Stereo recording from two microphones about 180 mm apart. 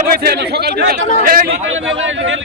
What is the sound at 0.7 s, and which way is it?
Speech, 55° right (ahead or behind).